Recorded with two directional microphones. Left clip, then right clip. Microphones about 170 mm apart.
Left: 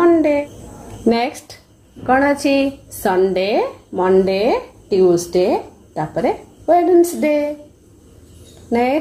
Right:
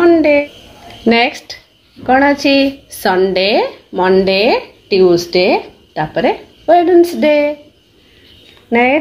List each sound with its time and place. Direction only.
0.0 s a sound: 25° right (ahead or behind)
1.0 s speech: 10° right (ahead or behind)
8.6 s speech: 10° right (ahead or behind)